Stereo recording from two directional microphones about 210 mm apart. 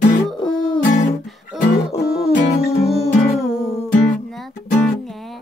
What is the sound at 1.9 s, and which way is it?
Music, 30° left (ahead or behind).